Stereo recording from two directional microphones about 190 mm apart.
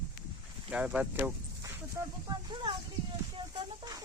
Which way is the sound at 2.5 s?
25° right (ahead or behind).